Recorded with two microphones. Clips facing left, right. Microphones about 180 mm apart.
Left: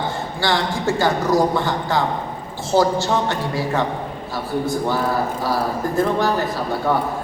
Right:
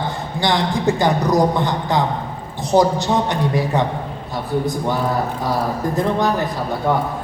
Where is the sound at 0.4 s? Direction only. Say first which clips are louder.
Right 3 dB; 20° right (ahead or behind).